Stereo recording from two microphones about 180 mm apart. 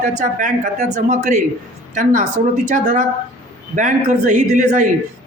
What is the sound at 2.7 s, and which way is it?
A man's voice, 45° right (ahead or behind).